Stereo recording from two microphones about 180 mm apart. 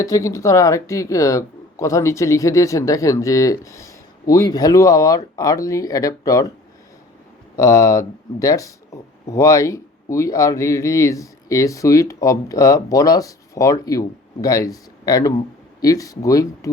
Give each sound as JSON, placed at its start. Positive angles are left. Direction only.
{"t": 0.0, "sound": "speech", "side_deg": 15}
{"t": 7.5, "sound": "speech", "side_deg": 20}